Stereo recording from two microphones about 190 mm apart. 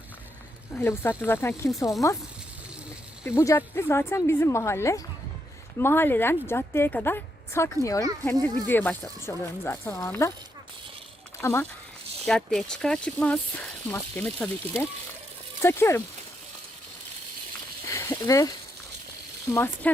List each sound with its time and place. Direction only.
0.8 s a woman's voice: 10° left (ahead or behind)
3.2 s a woman's voice: 15° left (ahead or behind)
11.3 s speech: 15° left (ahead or behind)
12.2 s a woman's voice: 5° left (ahead or behind)
17.9 s a sound: 15° left (ahead or behind)
19.5 s a woman's voice: 10° left (ahead or behind)